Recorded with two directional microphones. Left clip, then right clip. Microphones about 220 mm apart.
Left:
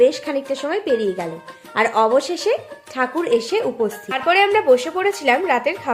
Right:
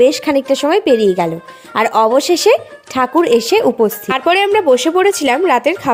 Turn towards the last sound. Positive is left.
turn(degrees=-40)  # may be behind; listen again after turning